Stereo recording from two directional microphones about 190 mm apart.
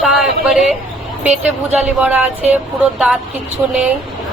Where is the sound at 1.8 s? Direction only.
10° right (ahead or behind).